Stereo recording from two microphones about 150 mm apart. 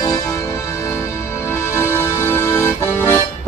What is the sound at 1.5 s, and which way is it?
Accordion, 15° left (ahead or behind).